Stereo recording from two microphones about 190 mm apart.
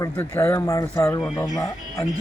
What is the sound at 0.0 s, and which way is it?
Speech, 15° left (ahead or behind).